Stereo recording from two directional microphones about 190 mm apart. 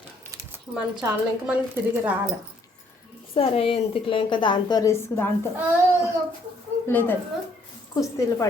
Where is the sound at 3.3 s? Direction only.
30° left (ahead or behind); by 5.3 s 15° left (ahead or behind).